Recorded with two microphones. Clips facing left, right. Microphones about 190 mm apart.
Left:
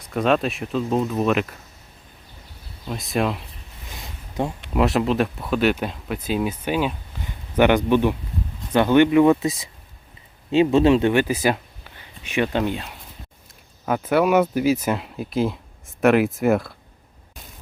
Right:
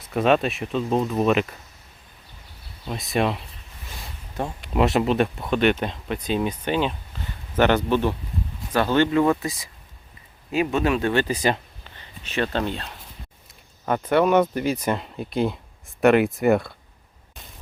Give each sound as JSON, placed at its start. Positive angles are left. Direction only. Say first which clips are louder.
{"t": 0.0, "sound": "speech", "louder": "even", "side_deg": -5}
{"t": 2.8, "sound": "speech", "louder": "even", "side_deg": 0}
{"t": 4.7, "sound": "speech", "louder": "even", "side_deg": 0}
{"t": 11.1, "sound": "speech", "louder": "left 2 dB", "side_deg": 10}